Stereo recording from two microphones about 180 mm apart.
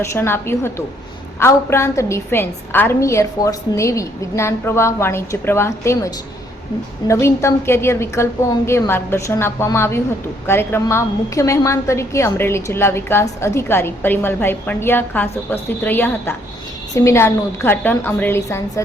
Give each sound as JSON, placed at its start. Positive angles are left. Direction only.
{"t": 0.0, "sound": "a woman's voice", "side_deg": 15}